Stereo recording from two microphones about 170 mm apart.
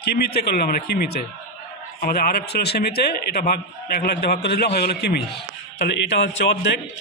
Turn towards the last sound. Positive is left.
turn(degrees=90)